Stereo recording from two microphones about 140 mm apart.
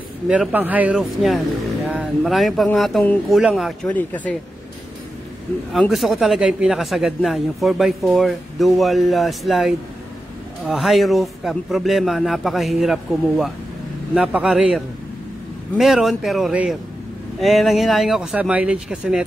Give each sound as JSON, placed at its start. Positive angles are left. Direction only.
{"t": 0.3, "sound": "speech", "side_deg": -10}
{"t": 3.9, "sound": "speech", "side_deg": 10}
{"t": 5.7, "sound": "speech", "side_deg": 0}
{"t": 15.8, "sound": "speech", "side_deg": 0}